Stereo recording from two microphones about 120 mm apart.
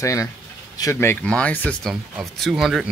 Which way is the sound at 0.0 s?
25° left (ahead or behind).